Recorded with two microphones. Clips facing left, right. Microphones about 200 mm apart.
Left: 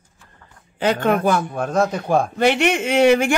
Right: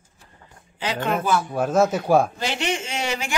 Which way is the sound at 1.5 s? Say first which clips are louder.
Right 1 dB; 5° right (ahead or behind).